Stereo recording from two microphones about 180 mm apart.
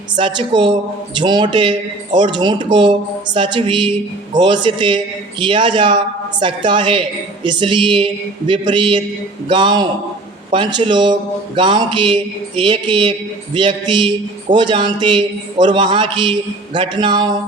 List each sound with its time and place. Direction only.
0.2 s a man's voice: 25° right (ahead or behind)